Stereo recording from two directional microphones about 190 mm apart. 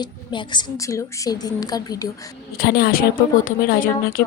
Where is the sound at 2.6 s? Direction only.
55° left (ahead or behind).